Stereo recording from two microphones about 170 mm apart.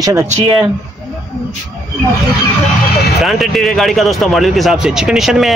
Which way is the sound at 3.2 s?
Centre (ahead or behind).